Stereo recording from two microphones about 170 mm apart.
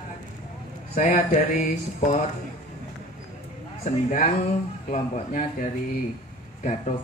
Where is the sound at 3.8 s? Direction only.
45° left (ahead or behind).